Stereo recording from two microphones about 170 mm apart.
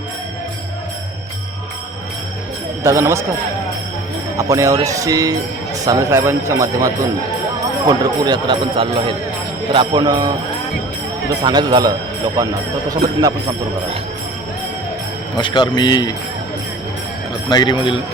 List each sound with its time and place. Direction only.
2.8 s a man's voice: 15° right (ahead or behind)
4.4 s a man's voice: 20° right (ahead or behind)
11.4 s speech: 25° right (ahead or behind)
15.4 s speech: 25° left (ahead or behind)
17.5 s speech: 25° left (ahead or behind)